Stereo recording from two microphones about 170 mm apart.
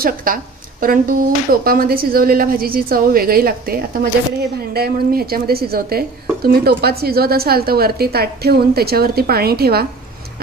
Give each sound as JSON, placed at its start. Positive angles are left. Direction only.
{"t": 0.0, "sound": "a woman's voice", "side_deg": -55}